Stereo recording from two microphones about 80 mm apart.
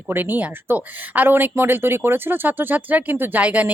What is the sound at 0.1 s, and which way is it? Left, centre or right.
Speech, right.